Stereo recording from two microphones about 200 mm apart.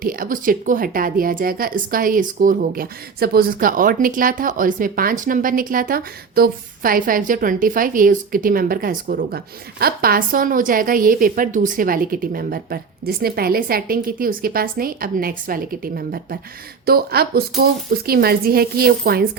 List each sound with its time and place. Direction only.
0.0 s a woman's voice: 45° right (ahead or behind)